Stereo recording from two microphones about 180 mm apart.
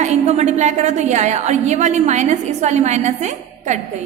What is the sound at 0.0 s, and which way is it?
A woman's voice, 40° right (ahead or behind).